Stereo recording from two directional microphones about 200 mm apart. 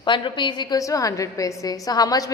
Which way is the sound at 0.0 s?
25° left (ahead or behind).